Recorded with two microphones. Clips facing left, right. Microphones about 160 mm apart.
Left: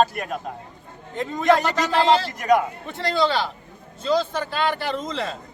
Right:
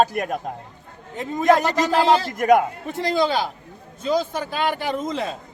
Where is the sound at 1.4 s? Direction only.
40° right (ahead or behind).